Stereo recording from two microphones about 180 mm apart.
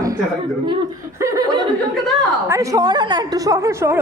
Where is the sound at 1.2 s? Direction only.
20° right (ahead or behind).